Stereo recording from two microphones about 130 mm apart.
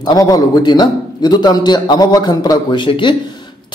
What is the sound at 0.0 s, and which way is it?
A man's voice, 30° left (ahead or behind).